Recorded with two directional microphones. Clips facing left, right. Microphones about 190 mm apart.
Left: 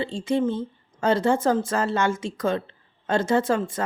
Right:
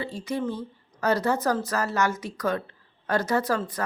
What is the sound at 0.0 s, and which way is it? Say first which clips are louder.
A woman's voice: left 6 dB; 25° left (ahead or behind).